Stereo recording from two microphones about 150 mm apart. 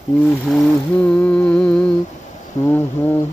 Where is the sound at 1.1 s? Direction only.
5° left (ahead or behind).